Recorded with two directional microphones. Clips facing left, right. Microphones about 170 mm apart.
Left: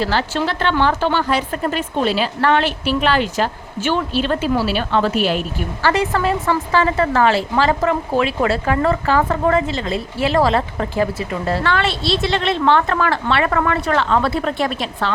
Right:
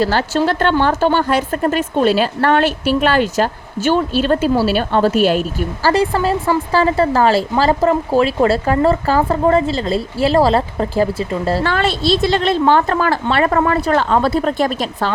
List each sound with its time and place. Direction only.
0.0 s speech: 45° right (ahead or behind)